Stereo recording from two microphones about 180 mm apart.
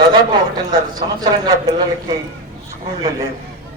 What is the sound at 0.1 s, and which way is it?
A man's voice, 25° right (ahead or behind).